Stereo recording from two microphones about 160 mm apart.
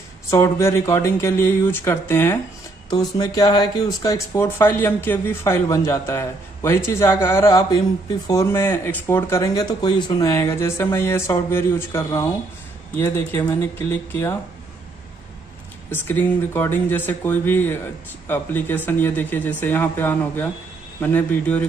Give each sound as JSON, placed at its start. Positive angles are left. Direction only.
{"t": 0.3, "sound": "speech", "side_deg": 15}
{"t": 15.9, "sound": "speech", "side_deg": 10}